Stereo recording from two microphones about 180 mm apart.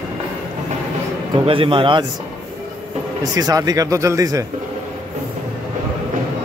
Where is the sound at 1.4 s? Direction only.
30° right (ahead or behind).